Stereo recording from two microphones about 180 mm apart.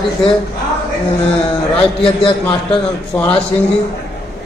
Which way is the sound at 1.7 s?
30° left (ahead or behind).